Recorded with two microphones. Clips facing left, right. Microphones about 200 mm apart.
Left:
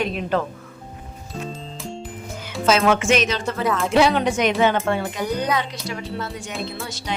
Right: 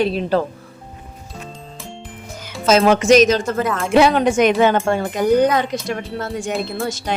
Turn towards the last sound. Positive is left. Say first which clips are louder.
# right 7 dB
turn(degrees=-45)  # may be behind; listen again after turning